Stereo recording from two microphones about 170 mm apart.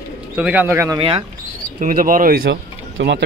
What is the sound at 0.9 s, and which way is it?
Speech, 30° right (ahead or behind).